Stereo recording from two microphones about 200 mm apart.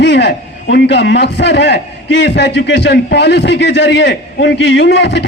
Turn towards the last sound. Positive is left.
turn(degrees=60)  # may be behind; listen again after turning